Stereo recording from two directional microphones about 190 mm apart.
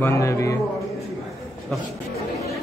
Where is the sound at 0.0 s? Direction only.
15° left (ahead or behind).